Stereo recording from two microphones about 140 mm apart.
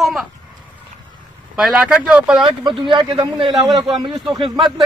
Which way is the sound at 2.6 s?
35° right (ahead or behind).